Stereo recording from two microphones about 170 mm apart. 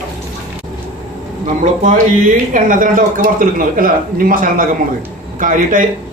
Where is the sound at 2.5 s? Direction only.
50° right (ahead or behind).